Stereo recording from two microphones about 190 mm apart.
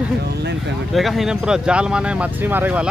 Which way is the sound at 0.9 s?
Centre (ahead or behind).